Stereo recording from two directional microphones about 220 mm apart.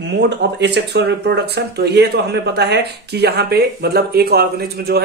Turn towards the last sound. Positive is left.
turn(degrees=-45)  # may be behind; listen again after turning